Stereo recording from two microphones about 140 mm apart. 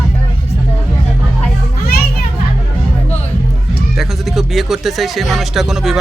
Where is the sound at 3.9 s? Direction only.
Centre (ahead or behind).